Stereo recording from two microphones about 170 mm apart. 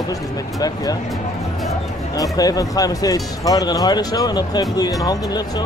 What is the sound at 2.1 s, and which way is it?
Speech, 20° left (ahead or behind).